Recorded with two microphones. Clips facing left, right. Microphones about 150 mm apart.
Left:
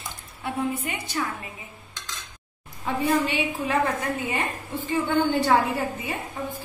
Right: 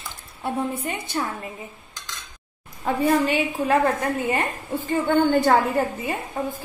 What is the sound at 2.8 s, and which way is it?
A woman's voice, 40° right (ahead or behind).